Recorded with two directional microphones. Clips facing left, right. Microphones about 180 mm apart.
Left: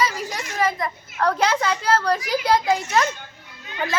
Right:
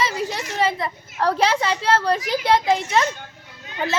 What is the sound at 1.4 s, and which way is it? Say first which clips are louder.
A child's voice: right 1 dB; 30° right (ahead or behind).